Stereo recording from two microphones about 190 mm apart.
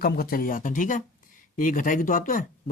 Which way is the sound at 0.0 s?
50° left (ahead or behind).